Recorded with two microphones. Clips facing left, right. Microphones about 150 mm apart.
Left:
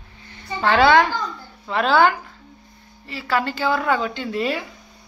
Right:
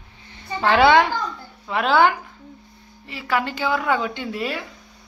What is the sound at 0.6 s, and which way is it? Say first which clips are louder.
A child's voice: even; 20° right (ahead or behind).